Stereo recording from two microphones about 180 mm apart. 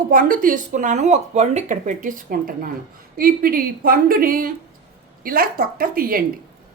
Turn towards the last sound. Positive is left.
turn(degrees=-55)  # may be behind; listen again after turning